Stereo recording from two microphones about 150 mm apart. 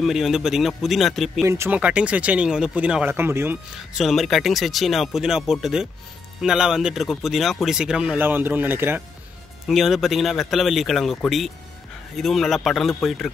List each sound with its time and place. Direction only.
0.0 s speech: centre (ahead or behind)
1.4 s speech: 15° right (ahead or behind)
4.0 s speech: centre (ahead or behind)
9.7 s speech: centre (ahead or behind)